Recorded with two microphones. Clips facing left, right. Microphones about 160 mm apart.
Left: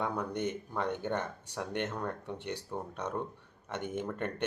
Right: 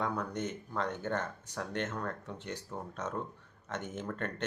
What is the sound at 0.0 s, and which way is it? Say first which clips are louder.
Speech: left 1 dB; 10° left (ahead or behind).